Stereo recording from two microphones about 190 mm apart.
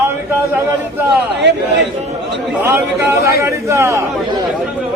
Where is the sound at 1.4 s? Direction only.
70° right (ahead or behind).